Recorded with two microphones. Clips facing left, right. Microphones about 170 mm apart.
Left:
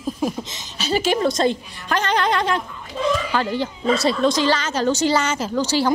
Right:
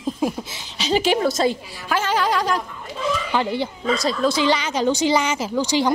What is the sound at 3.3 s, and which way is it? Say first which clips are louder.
Speech: even; 15° right (ahead or behind).